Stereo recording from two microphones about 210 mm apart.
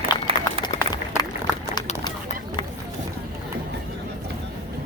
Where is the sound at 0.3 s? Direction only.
25° right (ahead or behind).